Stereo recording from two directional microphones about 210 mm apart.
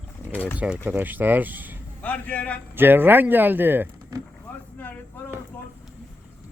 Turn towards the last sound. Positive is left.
turn(degrees=10)  # may be behind; listen again after turning